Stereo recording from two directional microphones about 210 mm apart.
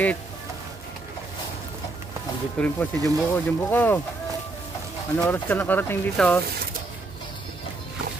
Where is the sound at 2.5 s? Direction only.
5° left (ahead or behind).